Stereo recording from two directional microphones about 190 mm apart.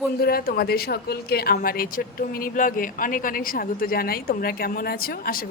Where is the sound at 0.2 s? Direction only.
50° left (ahead or behind).